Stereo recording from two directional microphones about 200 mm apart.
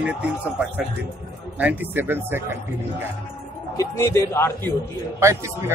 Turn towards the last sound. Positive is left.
turn(degrees=-15)  # may be behind; listen again after turning